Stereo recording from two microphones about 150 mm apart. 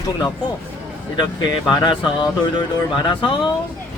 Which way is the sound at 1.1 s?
30° left (ahead or behind).